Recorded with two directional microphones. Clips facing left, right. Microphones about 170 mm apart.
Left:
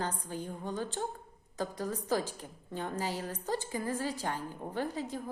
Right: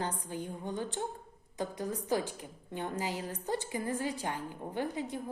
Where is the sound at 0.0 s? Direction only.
15° right (ahead or behind).